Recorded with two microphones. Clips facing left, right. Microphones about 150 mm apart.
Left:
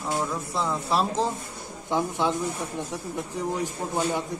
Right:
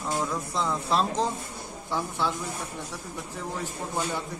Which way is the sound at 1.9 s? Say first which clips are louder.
Left 5 dB; 20° left (ahead or behind).